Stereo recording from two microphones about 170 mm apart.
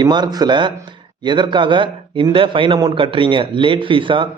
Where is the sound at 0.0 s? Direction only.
25° right (ahead or behind).